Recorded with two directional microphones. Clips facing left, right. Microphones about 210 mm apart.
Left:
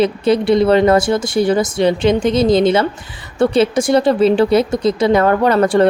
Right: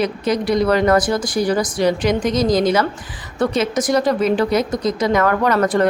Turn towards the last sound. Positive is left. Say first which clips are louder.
# left 4 dB
turn(degrees=30)  # may be behind; listen again after turning